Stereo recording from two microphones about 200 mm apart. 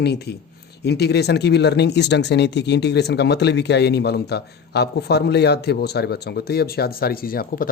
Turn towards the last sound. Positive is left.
turn(degrees=45)  # may be behind; listen again after turning